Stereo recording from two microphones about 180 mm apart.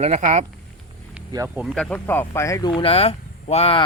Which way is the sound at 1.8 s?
10° left (ahead or behind).